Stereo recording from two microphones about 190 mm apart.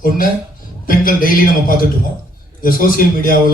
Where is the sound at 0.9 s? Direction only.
45° left (ahead or behind).